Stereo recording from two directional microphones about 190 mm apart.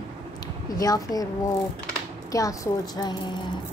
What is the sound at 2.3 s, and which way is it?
A woman's voice, 15° left (ahead or behind).